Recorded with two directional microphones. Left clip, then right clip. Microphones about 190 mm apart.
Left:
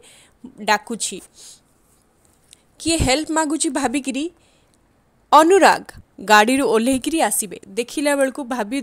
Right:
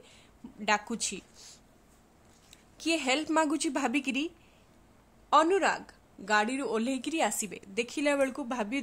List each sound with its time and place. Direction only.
0.0 s a sound: 35° left (ahead or behind)
3.3 s a woman's voice: 20° left (ahead or behind)
5.3 s a woman's voice: 40° left (ahead or behind)